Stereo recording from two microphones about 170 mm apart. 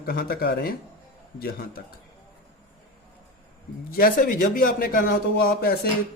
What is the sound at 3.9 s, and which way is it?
A man's voice, 60° left (ahead or behind).